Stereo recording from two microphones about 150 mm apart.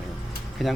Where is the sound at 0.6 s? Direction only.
Centre (ahead or behind).